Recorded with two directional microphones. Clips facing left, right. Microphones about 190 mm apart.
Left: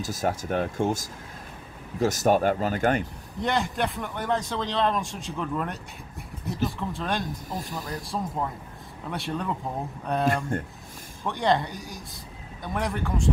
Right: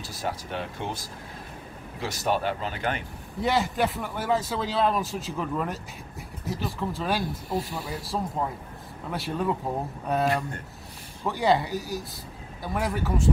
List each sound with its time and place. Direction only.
0.0 s speech: 45° left (ahead or behind)
3.3 s speech: 5° right (ahead or behind)